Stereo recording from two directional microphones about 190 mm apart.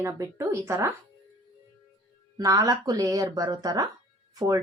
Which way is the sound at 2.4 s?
20° right (ahead or behind).